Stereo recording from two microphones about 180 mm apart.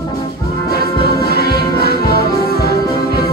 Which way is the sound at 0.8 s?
60° right (ahead or behind).